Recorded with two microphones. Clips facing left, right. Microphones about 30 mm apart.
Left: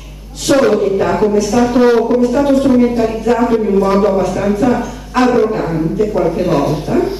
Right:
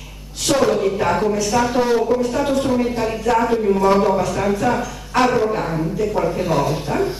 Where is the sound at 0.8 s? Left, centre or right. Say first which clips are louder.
Left 5 dB; centre.